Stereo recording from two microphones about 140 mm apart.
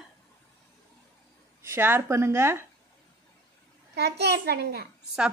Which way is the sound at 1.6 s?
15° right (ahead or behind).